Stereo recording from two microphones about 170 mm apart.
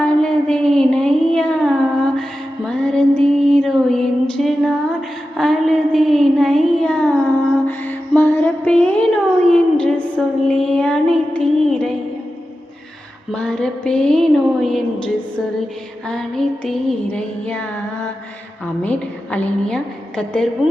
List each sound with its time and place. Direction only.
0.0 s music: 5° left (ahead or behind)
5.4 s child singing: centre (ahead or behind)
7.7 s music: 10° left (ahead or behind)
13.3 s a woman's voice: 5° left (ahead or behind)
16.0 s a sound: centre (ahead or behind)
18.8 s a woman's voice: 10° left (ahead or behind)